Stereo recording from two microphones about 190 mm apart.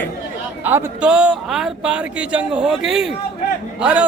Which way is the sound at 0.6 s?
10° right (ahead or behind).